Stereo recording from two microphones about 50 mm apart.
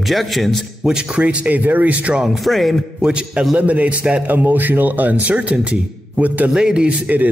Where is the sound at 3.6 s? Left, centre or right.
Right.